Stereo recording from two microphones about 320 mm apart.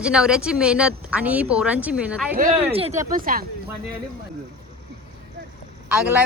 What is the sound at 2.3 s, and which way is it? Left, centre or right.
Speech, right.